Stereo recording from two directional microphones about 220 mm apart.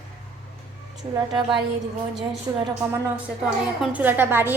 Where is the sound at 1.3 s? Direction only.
20° right (ahead or behind).